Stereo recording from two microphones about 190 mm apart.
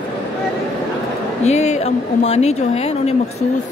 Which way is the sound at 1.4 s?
35° left (ahead or behind).